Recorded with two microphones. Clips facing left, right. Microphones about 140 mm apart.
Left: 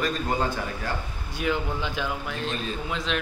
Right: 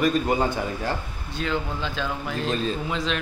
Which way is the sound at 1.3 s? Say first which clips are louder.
Even; 15° left (ahead or behind).